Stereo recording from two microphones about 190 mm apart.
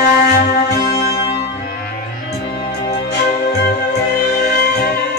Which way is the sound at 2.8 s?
60° left (ahead or behind).